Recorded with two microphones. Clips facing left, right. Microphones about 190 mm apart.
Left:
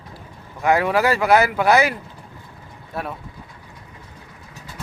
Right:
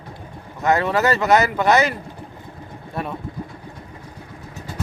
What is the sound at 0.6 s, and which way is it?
Speech, 10° left (ahead or behind).